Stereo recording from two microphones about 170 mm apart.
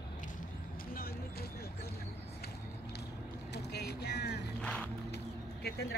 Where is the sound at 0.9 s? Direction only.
60° left (ahead or behind).